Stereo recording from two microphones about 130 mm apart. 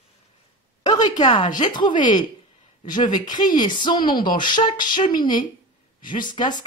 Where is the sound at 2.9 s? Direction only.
75° left (ahead or behind).